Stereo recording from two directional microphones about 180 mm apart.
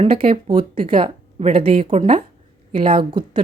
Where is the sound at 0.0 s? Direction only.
30° right (ahead or behind).